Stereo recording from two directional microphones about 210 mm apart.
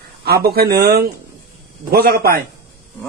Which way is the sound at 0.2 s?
50° right (ahead or behind).